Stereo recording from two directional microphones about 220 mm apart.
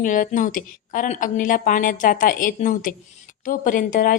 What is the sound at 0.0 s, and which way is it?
A woman's voice, 40° left (ahead or behind).